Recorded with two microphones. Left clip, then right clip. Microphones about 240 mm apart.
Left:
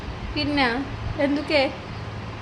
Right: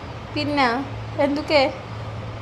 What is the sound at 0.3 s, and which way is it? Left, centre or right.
A woman's voice, centre.